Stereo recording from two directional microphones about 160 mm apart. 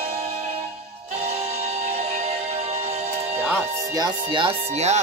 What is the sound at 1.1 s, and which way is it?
Music, 40° right (ahead or behind).